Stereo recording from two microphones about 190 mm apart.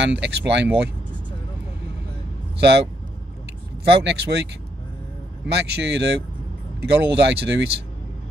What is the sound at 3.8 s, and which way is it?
Speech, 60° right (ahead or behind).